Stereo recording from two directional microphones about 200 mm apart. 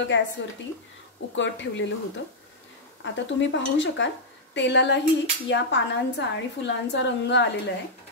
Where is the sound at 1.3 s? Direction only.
65° left (ahead or behind).